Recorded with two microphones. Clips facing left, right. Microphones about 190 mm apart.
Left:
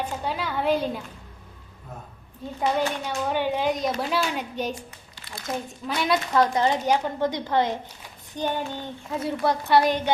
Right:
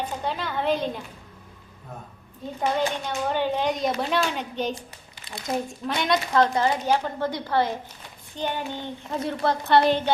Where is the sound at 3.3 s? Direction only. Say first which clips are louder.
Left 1 dB; 10° left (ahead or behind).